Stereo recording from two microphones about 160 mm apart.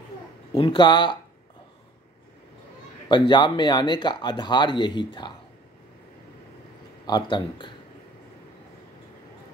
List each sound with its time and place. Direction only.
0.6 s speech: 30° left (ahead or behind)
3.1 s speech: 25° left (ahead or behind)
7.1 s speech: 25° left (ahead or behind)